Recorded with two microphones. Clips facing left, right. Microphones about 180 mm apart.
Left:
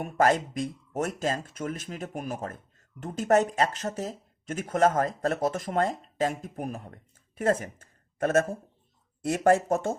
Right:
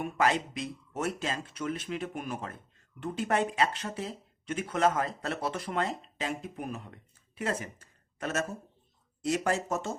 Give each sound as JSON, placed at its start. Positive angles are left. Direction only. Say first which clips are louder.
{"t": 0.0, "sound": "speech", "louder": "left 4 dB", "side_deg": 45}